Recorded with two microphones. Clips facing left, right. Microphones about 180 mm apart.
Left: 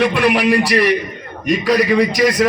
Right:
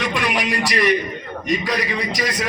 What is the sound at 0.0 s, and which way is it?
A man's voice, 60° left (ahead or behind).